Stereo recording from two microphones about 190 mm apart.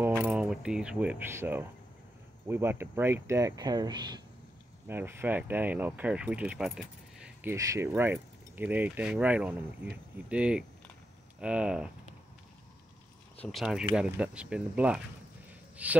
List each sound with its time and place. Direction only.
0.0 s speech: 15° right (ahead or behind)
4.8 s speech: 10° right (ahead or behind)
13.4 s speech: centre (ahead or behind)